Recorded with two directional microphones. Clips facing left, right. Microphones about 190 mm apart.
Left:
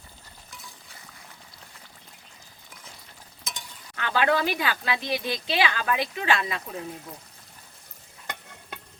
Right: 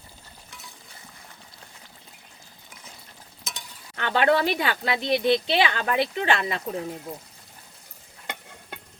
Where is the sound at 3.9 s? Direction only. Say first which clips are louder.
Right 3 dB; 30° right (ahead or behind).